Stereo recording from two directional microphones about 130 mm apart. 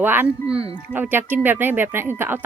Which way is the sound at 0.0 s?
15° right (ahead or behind).